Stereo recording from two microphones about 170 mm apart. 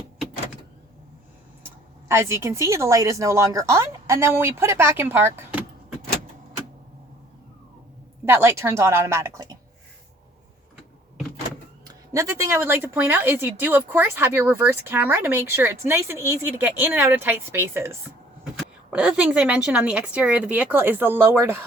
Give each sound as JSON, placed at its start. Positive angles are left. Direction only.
{"t": 2.0, "sound": "speech", "side_deg": -15}
{"t": 8.2, "sound": "speech", "side_deg": -15}
{"t": 11.9, "sound": "speech", "side_deg": -20}